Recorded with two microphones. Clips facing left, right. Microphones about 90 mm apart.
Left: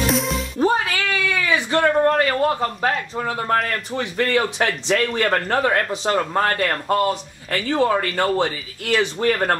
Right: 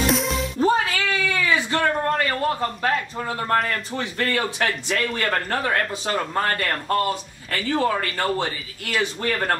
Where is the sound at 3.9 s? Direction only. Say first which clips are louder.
Left 7 dB; 15° left (ahead or behind).